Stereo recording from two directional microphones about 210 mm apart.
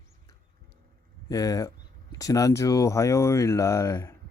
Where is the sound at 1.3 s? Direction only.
15° left (ahead or behind).